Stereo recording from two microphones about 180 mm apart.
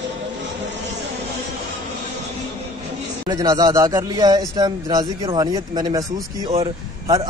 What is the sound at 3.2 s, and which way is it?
Speech, 25° right (ahead or behind).